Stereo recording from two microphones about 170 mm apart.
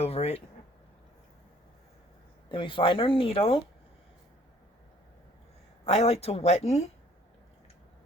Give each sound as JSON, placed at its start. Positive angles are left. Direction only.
{"t": 0.0, "sound": "a sound", "side_deg": 35}
{"t": 2.5, "sound": "speech", "side_deg": 30}
{"t": 5.8, "sound": "speech", "side_deg": 35}